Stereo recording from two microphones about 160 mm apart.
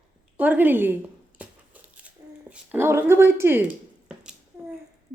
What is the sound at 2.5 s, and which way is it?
Speech, 10° right (ahead or behind).